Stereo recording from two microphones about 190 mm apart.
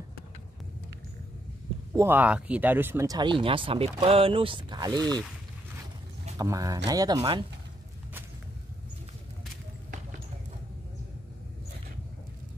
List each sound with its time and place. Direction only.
2.0 s speech: 10° right (ahead or behind)
6.3 s speech: 20° right (ahead or behind)